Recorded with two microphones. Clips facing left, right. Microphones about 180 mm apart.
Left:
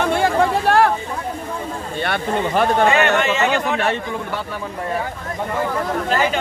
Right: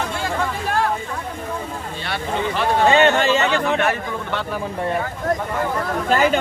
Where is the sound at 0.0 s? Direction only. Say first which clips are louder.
Left 7 dB; 65° left (ahead or behind).